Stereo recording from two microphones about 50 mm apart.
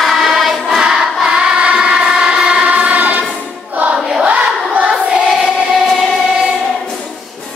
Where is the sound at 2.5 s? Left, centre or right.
Right.